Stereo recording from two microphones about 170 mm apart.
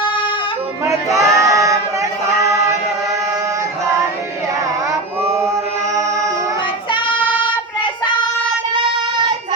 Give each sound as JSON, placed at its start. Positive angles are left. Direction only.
{"t": 1.1, "sound": "a sound", "side_deg": -20}
{"t": 6.9, "sound": "child singing", "side_deg": 30}
{"t": 8.7, "sound": "child singing", "side_deg": -25}